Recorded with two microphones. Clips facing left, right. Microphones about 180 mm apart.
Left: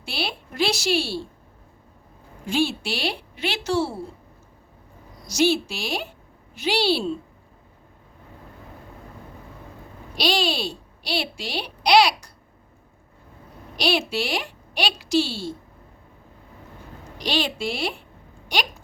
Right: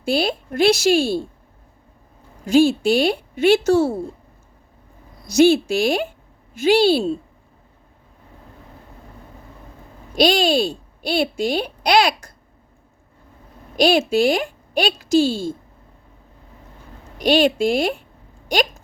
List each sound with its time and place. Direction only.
0.0 s speech: 45° right (ahead or behind)
2.5 s speech: 45° right (ahead or behind)
5.2 s speech: 55° right (ahead or behind)
10.2 s speech: 50° right (ahead or behind)
13.7 s speech: 50° right (ahead or behind)
17.2 s speech: 50° right (ahead or behind)